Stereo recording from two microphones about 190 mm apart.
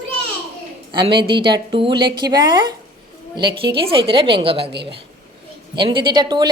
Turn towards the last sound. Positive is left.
turn(degrees=-20)  # may be behind; listen again after turning